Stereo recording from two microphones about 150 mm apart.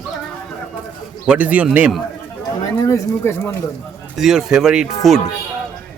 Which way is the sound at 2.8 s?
20° left (ahead or behind).